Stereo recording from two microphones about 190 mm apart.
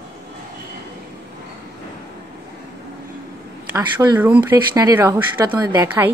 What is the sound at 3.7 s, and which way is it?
A woman's voice, 10° right (ahead or behind).